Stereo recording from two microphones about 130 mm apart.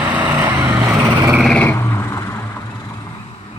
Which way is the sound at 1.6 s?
20° left (ahead or behind).